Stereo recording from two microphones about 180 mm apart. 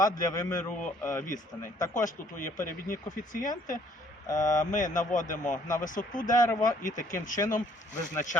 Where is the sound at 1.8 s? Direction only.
45° left (ahead or behind).